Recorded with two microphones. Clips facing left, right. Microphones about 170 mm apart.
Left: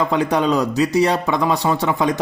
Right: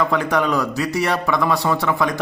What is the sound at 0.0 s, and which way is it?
Speech, 20° left (ahead or behind).